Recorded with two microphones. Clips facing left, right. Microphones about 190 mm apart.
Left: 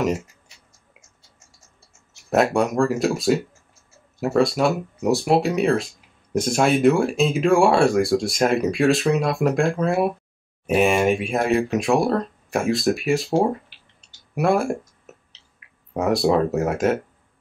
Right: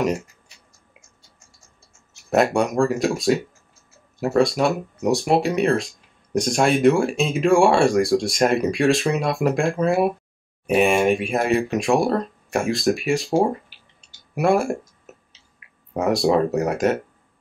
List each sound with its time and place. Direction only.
2.3 s speech: centre (ahead or behind)
14.3 s tick-tock: centre (ahead or behind)
15.6 s speech: centre (ahead or behind)